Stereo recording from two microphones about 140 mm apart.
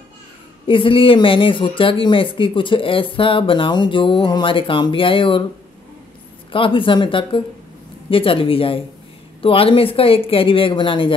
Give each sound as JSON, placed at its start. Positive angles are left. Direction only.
{"t": 0.7, "sound": "speech", "side_deg": 40}
{"t": 6.5, "sound": "speech", "side_deg": 40}